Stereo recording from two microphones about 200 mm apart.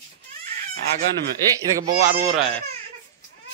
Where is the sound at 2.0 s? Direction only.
40° right (ahead or behind).